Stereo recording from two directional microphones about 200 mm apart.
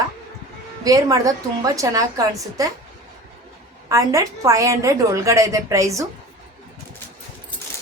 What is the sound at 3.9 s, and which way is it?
A woman's voice, 15° right (ahead or behind).